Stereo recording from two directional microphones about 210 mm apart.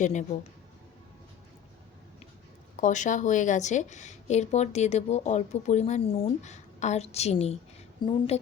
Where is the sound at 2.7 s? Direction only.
35° left (ahead or behind).